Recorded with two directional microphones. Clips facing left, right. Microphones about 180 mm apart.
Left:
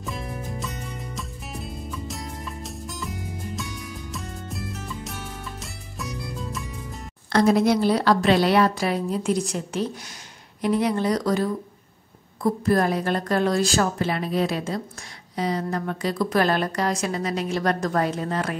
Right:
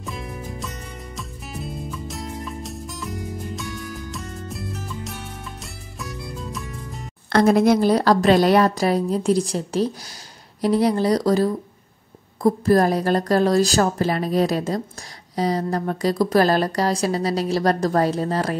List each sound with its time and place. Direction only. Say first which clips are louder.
0.0 s music: even; centre (ahead or behind)
7.3 s a woman's voice: right 3 dB; 50° right (ahead or behind)